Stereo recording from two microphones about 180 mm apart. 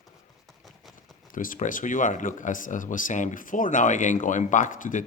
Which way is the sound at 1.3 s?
50° left (ahead or behind).